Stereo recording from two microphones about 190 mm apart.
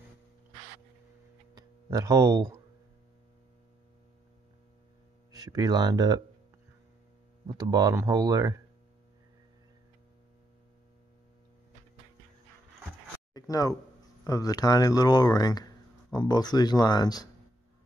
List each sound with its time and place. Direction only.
1.5 s music: 20° right (ahead or behind)
5.3 s speech: 20° right (ahead or behind)
7.4 s speech: 20° right (ahead or behind)
13.3 s a sound: 20° left (ahead or behind)
14.2 s speech: 20° left (ahead or behind)